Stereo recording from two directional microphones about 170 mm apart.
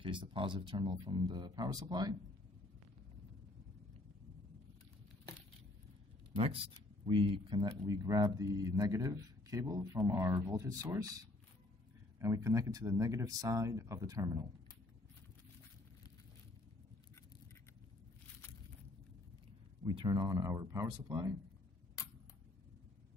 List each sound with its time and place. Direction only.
0.0 s speech: 30° right (ahead or behind)
6.3 s speech: 35° right (ahead or behind); by 11.1 s 20° right (ahead or behind)
12.2 s speech: 20° right (ahead or behind)
19.8 s speech: 25° right (ahead or behind)